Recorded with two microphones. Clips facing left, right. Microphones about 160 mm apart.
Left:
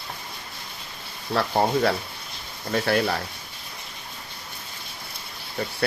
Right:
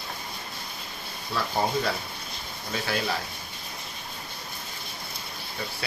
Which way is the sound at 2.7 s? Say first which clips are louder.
Left 8 dB; 55° left (ahead or behind).